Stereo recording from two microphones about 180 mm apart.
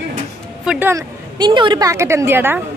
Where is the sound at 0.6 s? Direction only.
5° right (ahead or behind).